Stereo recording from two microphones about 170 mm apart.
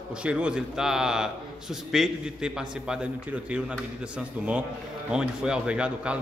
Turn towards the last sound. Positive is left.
turn(degrees=-5)  # may be behind; listen again after turning